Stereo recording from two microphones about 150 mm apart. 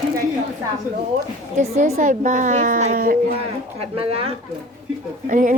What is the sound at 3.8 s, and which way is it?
Speech, 40° right (ahead or behind).